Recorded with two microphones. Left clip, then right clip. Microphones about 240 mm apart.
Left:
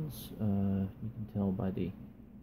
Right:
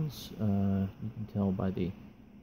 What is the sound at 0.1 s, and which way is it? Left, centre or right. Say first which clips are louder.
Speech: right 2 dB; right.